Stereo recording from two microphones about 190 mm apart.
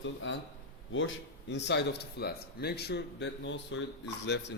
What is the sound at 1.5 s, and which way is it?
Speech, 65° left (ahead or behind).